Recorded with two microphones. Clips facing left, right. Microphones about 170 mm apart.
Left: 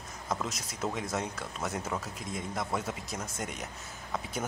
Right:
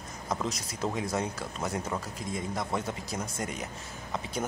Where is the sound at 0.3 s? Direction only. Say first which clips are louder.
Right 2 dB; 5° left (ahead or behind).